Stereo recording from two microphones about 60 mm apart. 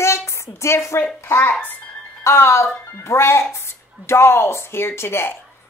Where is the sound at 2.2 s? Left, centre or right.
Left.